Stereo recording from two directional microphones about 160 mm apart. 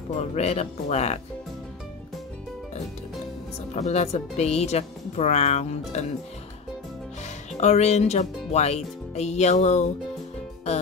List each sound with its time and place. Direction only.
0.3 s speech: 45° left (ahead or behind)
3.7 s speech: 45° left (ahead or behind)
7.6 s speech: 45° left (ahead or behind)